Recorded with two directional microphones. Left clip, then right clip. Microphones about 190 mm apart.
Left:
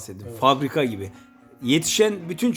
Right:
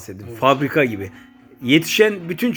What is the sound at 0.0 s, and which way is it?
Speech, centre (ahead or behind).